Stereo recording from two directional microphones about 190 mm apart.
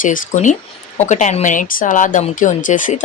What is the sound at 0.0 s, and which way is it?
A woman's voice, 40° left (ahead or behind).